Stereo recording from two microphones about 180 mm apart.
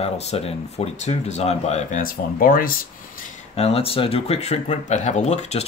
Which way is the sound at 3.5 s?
35° left (ahead or behind).